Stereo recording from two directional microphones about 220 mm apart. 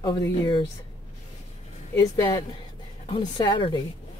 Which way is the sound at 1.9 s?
15° left (ahead or behind).